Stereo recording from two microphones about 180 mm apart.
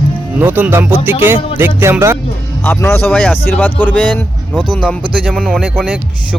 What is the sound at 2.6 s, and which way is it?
Speech, 10° left (ahead or behind).